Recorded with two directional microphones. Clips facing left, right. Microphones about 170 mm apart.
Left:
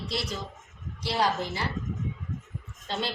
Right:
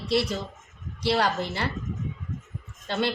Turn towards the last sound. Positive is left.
turn(degrees=-65)  # may be behind; listen again after turning